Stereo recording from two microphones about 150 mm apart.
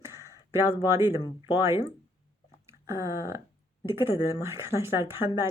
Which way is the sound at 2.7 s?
20° right (ahead or behind).